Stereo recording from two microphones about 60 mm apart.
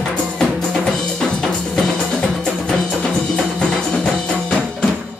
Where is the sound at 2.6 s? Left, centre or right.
Centre.